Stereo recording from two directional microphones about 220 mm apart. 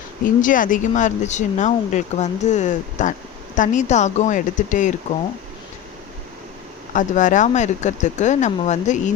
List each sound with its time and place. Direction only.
0.4 s speech: 35° left (ahead or behind)
6.9 s speech: 35° left (ahead or behind)